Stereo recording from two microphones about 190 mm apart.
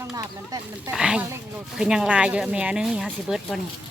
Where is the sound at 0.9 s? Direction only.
5° right (ahead or behind).